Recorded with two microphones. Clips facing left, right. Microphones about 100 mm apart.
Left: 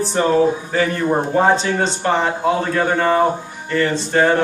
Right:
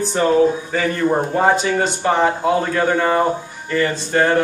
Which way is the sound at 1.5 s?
5° right (ahead or behind).